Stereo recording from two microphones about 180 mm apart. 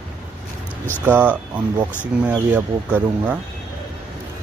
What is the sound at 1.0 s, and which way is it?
Speech, 10° right (ahead or behind).